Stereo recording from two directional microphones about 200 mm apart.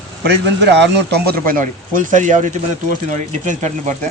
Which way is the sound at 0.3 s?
60° right (ahead or behind).